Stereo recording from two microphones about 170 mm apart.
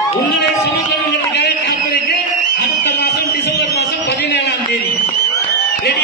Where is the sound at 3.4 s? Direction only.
80° left.